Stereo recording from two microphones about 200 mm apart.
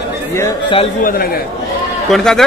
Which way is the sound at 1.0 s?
45° left (ahead or behind).